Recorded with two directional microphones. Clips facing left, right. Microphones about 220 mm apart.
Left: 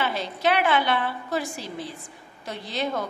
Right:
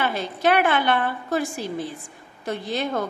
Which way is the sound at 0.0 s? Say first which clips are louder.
Right 3 dB; 50° right (ahead or behind).